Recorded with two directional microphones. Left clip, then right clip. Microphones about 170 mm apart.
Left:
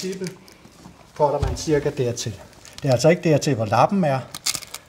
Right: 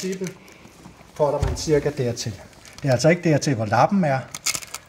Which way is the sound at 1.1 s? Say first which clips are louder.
Left 1 dB; centre (ahead or behind).